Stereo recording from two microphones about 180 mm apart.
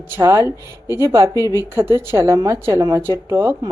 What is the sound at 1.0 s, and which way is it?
A woman's voice, 20° right (ahead or behind).